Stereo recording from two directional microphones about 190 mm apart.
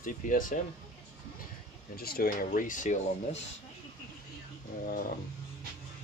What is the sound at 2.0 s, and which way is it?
Speech, 55° left (ahead or behind).